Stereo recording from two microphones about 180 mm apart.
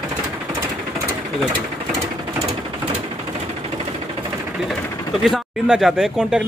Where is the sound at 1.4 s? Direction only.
Centre (ahead or behind).